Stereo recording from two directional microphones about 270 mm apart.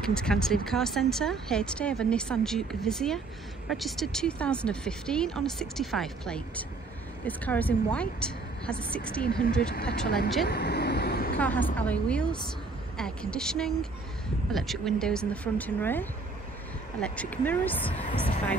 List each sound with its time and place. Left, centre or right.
0.0 s speech: centre
9.2 s speech: left
10.4 s vehicle: left
11.3 s a woman's voice: centre